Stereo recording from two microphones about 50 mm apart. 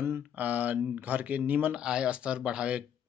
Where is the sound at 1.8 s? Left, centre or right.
Centre.